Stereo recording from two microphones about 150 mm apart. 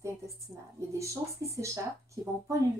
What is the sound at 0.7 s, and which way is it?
Speech, 20° right (ahead or behind).